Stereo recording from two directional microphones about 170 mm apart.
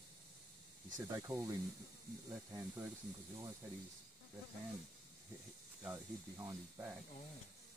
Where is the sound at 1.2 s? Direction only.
15° right (ahead or behind).